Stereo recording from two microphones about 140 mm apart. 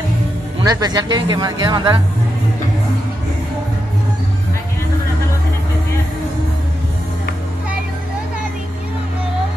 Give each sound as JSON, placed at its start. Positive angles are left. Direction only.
{"t": 0.6, "sound": "speech", "side_deg": -30}